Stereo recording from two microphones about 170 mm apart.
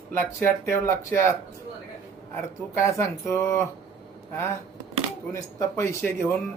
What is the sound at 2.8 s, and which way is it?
Speech, 15° left (ahead or behind).